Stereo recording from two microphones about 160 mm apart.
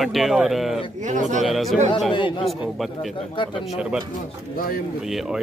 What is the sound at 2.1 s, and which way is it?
Speech, 30° left (ahead or behind).